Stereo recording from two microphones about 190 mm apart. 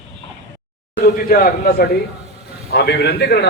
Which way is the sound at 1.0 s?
50° left (ahead or behind).